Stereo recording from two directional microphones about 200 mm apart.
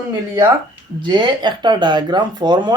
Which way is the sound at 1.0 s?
25° right (ahead or behind).